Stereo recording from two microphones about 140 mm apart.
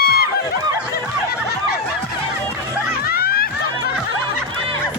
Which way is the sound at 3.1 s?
90° left.